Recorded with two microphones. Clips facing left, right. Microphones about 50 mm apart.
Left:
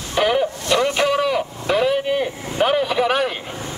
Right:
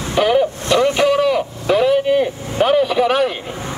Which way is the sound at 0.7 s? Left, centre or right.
Right.